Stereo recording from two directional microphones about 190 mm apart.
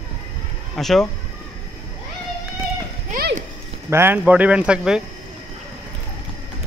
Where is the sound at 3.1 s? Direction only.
50° right (ahead or behind).